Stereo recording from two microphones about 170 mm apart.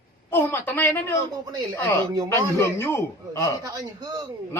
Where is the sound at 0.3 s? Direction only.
10° left (ahead or behind).